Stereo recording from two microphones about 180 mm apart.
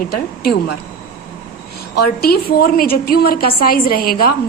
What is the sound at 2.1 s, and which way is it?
A woman's voice, 60° left (ahead or behind).